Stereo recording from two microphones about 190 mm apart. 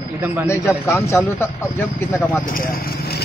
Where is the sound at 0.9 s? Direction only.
10° left (ahead or behind).